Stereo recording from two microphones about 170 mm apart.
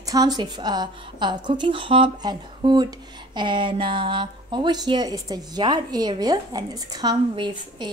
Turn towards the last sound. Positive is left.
turn(degrees=-25)  # may be behind; listen again after turning